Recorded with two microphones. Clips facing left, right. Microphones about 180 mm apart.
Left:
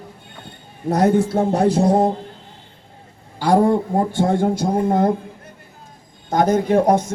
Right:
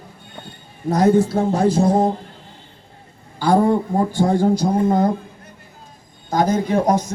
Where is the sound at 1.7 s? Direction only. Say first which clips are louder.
Left 1 dB; 35° left (ahead or behind).